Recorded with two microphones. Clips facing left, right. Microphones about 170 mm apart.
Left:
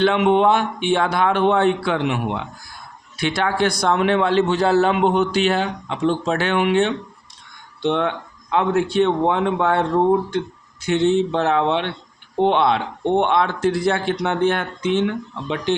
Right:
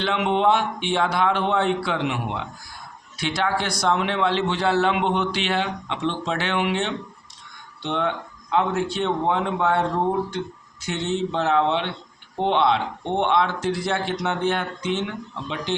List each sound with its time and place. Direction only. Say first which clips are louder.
0.0 s a man's voice: left 5 dB; 55° left (ahead or behind)
3.2 s a man's voice: left 4 dB; 55° left (ahead or behind)
10.8 s speech: left 8 dB; 60° left (ahead or behind)